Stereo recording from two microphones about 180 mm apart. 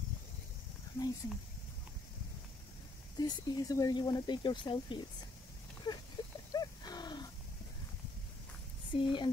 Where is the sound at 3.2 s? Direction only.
20° left (ahead or behind).